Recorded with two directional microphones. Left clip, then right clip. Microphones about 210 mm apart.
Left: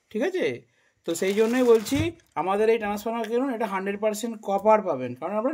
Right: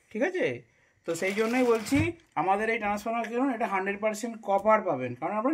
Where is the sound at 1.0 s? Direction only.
50° left (ahead or behind).